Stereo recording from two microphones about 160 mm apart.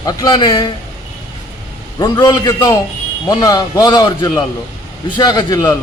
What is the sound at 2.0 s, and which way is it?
A man's voice, 25° left (ahead or behind).